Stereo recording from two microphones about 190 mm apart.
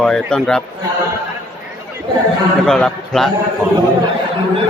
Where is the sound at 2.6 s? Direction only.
Centre (ahead or behind).